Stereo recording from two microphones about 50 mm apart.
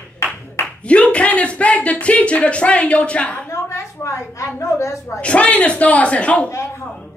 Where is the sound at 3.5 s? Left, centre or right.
Left.